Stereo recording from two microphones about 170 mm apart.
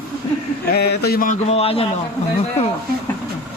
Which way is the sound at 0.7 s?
65° left (ahead or behind).